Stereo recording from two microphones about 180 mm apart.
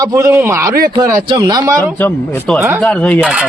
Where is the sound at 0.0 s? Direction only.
15° right (ahead or behind).